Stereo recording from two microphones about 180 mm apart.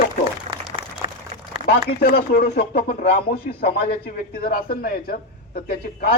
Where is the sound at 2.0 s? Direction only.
55° left (ahead or behind).